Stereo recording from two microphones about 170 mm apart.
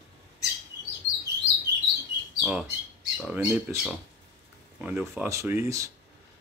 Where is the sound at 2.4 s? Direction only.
5° right (ahead or behind).